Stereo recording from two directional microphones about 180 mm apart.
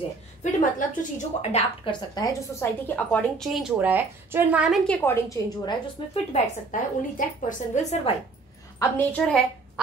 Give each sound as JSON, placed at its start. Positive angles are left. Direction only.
{"t": 0.4, "sound": "a woman's voice", "side_deg": 45}
{"t": 1.9, "sound": "a woman's voice", "side_deg": 20}
{"t": 5.4, "sound": "a woman's voice", "side_deg": 20}
{"t": 6.3, "sound": "a woman's voice", "side_deg": 45}
{"t": 8.7, "sound": "a woman's voice", "side_deg": 10}